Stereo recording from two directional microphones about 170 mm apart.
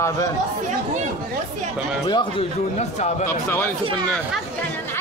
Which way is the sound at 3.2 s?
15° left (ahead or behind).